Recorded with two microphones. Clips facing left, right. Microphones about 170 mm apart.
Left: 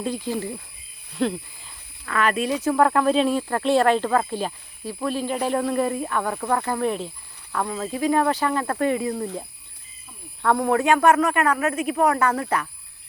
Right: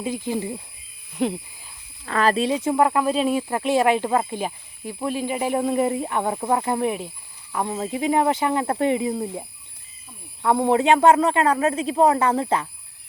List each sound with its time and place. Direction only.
0.3 s speech: 15° right (ahead or behind)
2.0 s speech: 30° right (ahead or behind)
2.7 s speech: 5° right (ahead or behind)
10.6 s speech: 25° right (ahead or behind)